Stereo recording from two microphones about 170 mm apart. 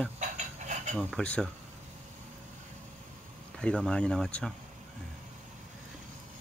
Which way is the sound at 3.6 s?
5° left (ahead or behind).